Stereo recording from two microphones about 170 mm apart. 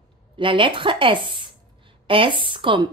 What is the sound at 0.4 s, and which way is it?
A woman's voice, 30° right (ahead or behind).